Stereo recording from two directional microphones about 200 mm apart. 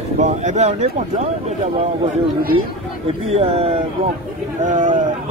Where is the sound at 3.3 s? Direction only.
30° right (ahead or behind).